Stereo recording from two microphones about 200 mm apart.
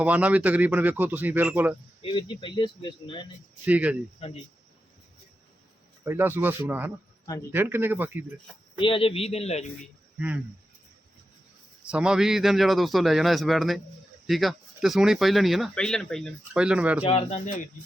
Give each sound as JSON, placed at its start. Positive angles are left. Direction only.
{"t": 0.0, "sound": "speech", "side_deg": -5}
{"t": 2.0, "sound": "speech", "side_deg": 25}
{"t": 3.7, "sound": "speech", "side_deg": -5}
{"t": 4.2, "sound": "speech", "side_deg": 30}
{"t": 6.1, "sound": "speech", "side_deg": -10}
{"t": 8.8, "sound": "speech", "side_deg": 25}
{"t": 10.2, "sound": "speech", "side_deg": -5}
{"t": 11.9, "sound": "speech", "side_deg": -5}
{"t": 17.1, "sound": "speech", "side_deg": 30}